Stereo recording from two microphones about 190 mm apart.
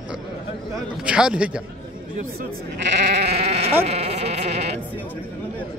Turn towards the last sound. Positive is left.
turn(degrees=-35)  # may be behind; listen again after turning